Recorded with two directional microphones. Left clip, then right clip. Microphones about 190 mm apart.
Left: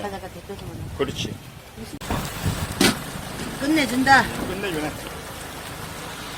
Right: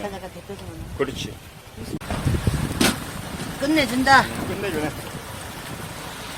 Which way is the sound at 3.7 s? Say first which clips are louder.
Even; 60° right (ahead or behind).